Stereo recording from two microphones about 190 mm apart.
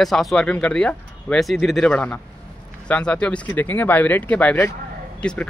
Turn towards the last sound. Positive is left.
turn(degrees=5)  # may be behind; listen again after turning